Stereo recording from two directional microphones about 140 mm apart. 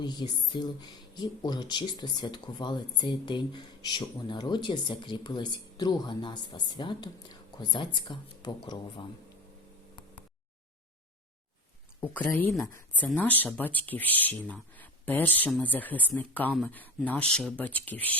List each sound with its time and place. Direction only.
0.0 s speech: 30° left (ahead or behind)
11.9 s speech: 10° left (ahead or behind)